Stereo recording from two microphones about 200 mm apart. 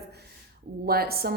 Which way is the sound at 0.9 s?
50° right (ahead or behind).